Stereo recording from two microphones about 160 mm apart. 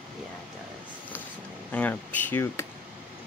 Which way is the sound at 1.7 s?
10° left (ahead or behind).